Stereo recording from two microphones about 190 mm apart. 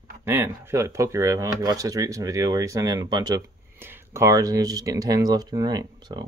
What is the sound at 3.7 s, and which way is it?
Speech, 10° right (ahead or behind).